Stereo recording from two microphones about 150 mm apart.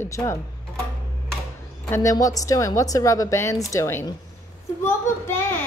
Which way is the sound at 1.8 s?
20° left (ahead or behind).